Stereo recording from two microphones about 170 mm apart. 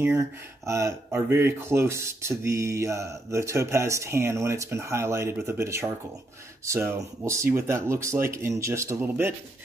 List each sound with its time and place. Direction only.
0.7 s speech: 15° right (ahead or behind)